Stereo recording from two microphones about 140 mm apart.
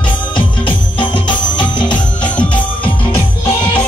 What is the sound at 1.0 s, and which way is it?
Music, 35° left (ahead or behind).